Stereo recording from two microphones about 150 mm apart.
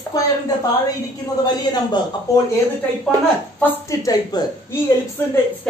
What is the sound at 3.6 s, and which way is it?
Speech, 15° left (ahead or behind).